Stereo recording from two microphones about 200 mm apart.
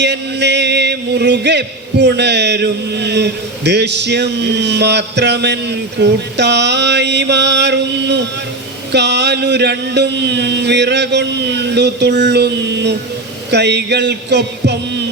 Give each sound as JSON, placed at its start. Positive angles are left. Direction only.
{"t": 0.0, "sound": "music", "side_deg": -60}